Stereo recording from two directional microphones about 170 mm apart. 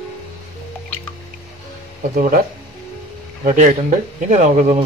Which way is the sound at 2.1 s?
50° right (ahead or behind).